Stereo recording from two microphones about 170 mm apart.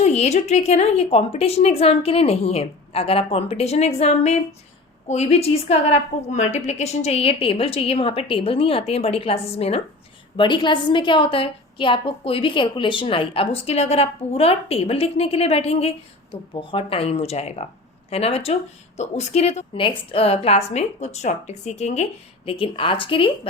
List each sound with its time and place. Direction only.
0.0 s a woman's voice: 40° left (ahead or behind)